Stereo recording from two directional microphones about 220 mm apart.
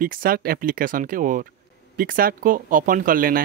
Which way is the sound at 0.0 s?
40° right (ahead or behind).